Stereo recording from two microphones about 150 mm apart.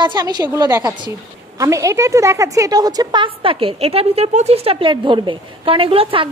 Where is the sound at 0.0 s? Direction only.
30° right (ahead or behind).